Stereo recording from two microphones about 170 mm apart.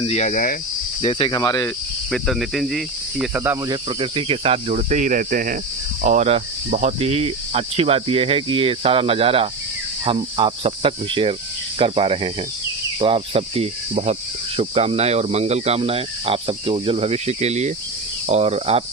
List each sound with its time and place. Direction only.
0.0 s cricket: 40° left (ahead or behind)
1.0 s cricket: 30° left (ahead or behind)
2.0 s cricket: centre (ahead or behind)
3.7 s cricket: 30° right (ahead or behind); by 5.5 s 55° right (ahead or behind)
6.0 s cricket: 45° right (ahead or behind)